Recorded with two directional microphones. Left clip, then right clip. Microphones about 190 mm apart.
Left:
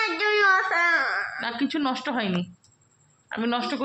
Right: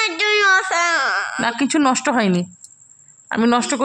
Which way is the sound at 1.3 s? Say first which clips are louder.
Right 9 dB; 55° right (ahead or behind).